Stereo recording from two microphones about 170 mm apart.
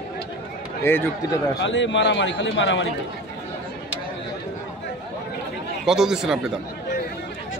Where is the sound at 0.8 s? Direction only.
15° left (ahead or behind).